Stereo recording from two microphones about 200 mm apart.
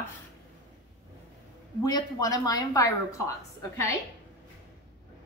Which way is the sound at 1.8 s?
20° left (ahead or behind).